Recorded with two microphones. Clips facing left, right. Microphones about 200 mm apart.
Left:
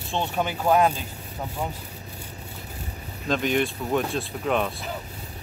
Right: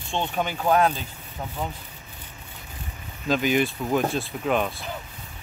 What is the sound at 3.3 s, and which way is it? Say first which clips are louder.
Speech: right 1 dB; centre (ahead or behind).